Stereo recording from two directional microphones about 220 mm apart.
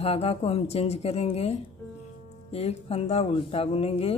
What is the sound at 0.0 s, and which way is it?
Speech, 25° left (ahead or behind).